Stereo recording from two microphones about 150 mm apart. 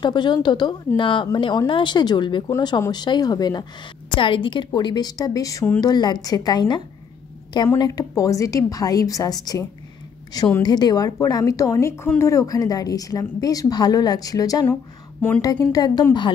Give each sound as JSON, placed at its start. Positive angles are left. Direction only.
{"t": 0.0, "sound": "a woman's voice", "side_deg": 30}